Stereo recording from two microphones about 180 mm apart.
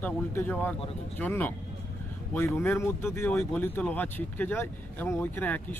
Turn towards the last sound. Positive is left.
turn(degrees=10)  # may be behind; listen again after turning